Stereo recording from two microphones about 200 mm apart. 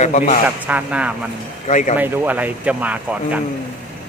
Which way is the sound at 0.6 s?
5° right (ahead or behind).